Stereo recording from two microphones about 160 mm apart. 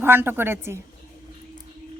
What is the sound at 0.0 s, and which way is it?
Speech, 15° right (ahead or behind).